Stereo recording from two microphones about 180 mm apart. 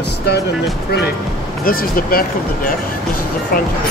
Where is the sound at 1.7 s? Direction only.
55° left (ahead or behind).